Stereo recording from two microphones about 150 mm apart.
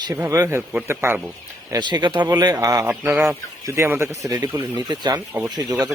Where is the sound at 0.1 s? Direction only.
20° right (ahead or behind).